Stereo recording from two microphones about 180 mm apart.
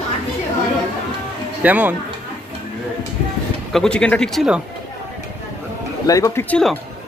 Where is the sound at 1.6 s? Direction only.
10° right (ahead or behind).